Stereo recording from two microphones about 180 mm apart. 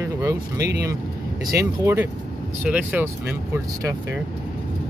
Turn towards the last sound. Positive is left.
turn(degrees=-10)  # may be behind; listen again after turning